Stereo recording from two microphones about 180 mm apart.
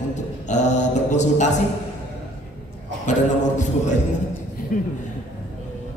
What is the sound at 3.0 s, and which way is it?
Mantra, 40° left (ahead or behind).